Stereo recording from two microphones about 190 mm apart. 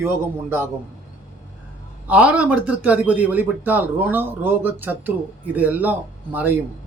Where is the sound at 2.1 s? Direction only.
5° right (ahead or behind).